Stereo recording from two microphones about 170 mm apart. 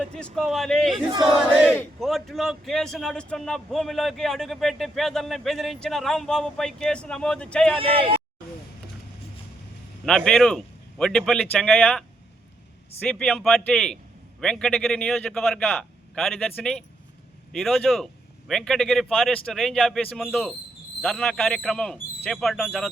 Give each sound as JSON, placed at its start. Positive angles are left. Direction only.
{"t": 0.0, "sound": "a man's voice", "side_deg": 5}
{"t": 7.8, "sound": "speech", "side_deg": -30}
{"t": 10.1, "sound": "a man's voice", "side_deg": 5}
{"t": 17.5, "sound": "a man's voice", "side_deg": 0}